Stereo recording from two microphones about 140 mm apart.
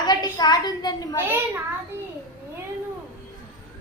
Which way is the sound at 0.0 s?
30° left (ahead or behind).